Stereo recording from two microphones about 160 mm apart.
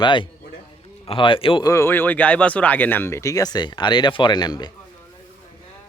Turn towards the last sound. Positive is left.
turn(degrees=25)  # may be behind; listen again after turning